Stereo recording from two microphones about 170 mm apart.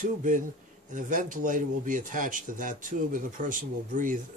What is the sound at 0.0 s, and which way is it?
Speech, 50° right (ahead or behind).